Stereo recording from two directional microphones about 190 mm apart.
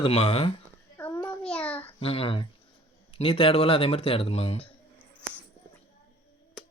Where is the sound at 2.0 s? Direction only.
30° left (ahead or behind).